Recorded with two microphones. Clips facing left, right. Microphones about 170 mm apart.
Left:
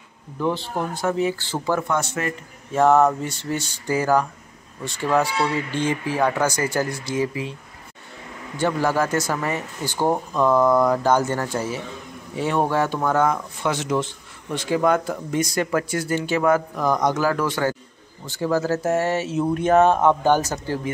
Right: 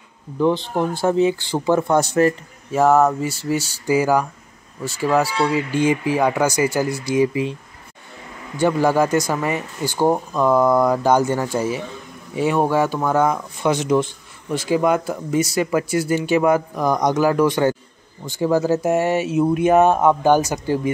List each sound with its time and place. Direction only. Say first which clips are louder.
0.4 s speech: right 5 dB; 20° right (ahead or behind)
1.9 s speech: right 8 dB; 35° right (ahead or behind)
2.7 s speech: right 1 dB; 5° right (ahead or behind)
8.5 s speech: right 4 dB; 15° right (ahead or behind)